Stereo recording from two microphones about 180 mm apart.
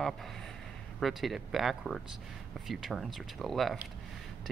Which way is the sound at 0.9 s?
Centre (ahead or behind).